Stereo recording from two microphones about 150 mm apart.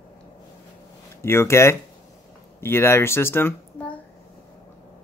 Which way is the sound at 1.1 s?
15° left (ahead or behind).